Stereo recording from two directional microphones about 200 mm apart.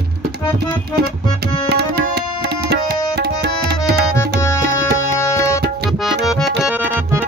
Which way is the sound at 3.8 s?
15° left (ahead or behind).